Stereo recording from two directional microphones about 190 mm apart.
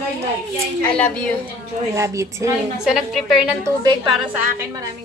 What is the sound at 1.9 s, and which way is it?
Speech, 15° right (ahead or behind).